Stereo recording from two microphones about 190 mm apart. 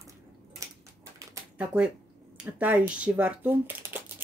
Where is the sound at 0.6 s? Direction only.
15° right (ahead or behind).